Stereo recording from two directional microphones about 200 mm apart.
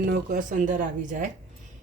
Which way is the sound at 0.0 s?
40° right (ahead or behind).